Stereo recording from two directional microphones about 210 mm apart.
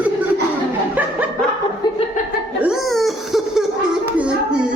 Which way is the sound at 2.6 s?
Centre (ahead or behind).